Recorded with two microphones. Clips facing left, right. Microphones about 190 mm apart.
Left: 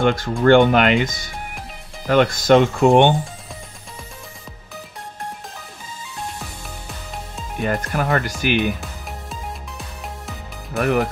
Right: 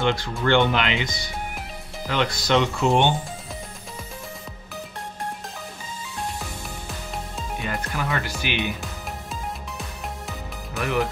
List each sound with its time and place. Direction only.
0.0 s speech: 45° left (ahead or behind)
7.6 s speech: 50° left (ahead or behind)
9.3 s music: centre (ahead or behind)
10.8 s speech: 50° left (ahead or behind)